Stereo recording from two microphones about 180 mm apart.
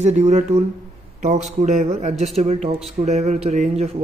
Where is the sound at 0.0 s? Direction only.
40° right (ahead or behind).